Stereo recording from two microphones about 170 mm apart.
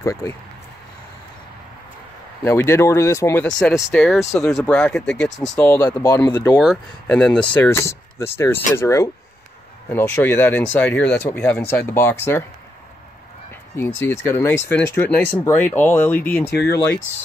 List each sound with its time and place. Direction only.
0.0 s speech: 15° left (ahead or behind)
2.4 s speech: 15° left (ahead or behind)
3.4 s speech: 5° left (ahead or behind)
6.6 s speech: 5° left (ahead or behind)
13.7 s speech: 10° left (ahead or behind)